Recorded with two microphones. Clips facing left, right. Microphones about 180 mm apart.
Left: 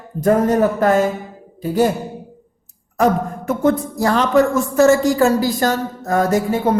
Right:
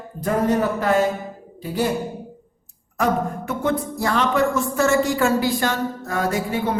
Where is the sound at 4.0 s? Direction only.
40° left (ahead or behind).